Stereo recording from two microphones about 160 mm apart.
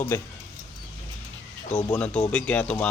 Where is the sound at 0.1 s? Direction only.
15° left (ahead or behind).